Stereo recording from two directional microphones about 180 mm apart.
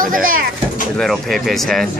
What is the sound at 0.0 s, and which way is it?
Speech, 50° right (ahead or behind).